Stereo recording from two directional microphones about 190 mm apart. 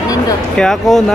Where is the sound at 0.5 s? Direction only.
Centre (ahead or behind).